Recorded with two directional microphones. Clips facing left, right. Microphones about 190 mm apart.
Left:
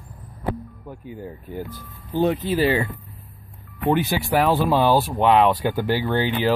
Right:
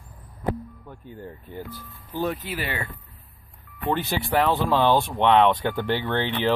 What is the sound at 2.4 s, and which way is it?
Speech, 30° left (ahead or behind).